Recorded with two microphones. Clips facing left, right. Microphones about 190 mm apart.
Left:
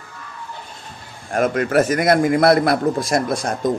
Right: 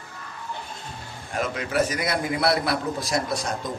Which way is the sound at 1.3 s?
50° left (ahead or behind).